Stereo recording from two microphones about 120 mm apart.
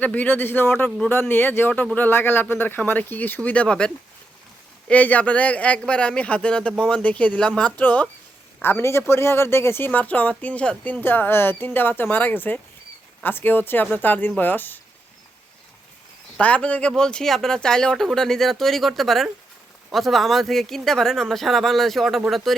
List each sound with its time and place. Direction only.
0.0 s speech: 15° left (ahead or behind)
0.9 s speech: 5° left (ahead or behind)
1.1 s speech: 15° left (ahead or behind)
16.4 s speech: 10° left (ahead or behind)